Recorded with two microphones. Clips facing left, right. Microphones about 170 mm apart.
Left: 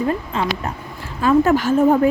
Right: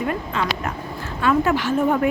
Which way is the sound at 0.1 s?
30° left (ahead or behind).